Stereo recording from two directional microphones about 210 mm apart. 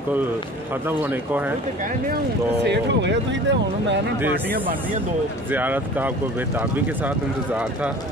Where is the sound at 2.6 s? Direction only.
55° right (ahead or behind).